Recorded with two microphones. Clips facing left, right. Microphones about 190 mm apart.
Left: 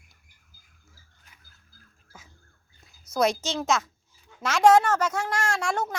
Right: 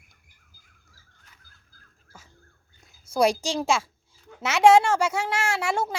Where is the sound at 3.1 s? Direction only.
25° right (ahead or behind).